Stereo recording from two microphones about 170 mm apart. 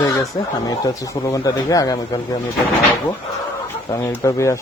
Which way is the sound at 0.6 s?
20° left (ahead or behind).